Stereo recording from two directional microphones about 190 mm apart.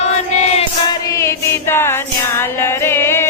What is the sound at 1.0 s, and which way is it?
Music, 15° left (ahead or behind).